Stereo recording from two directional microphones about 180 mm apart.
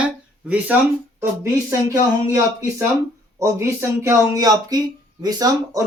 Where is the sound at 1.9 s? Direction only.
15° right (ahead or behind).